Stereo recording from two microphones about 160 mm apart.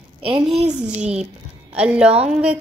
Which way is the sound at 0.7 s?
5° right (ahead or behind).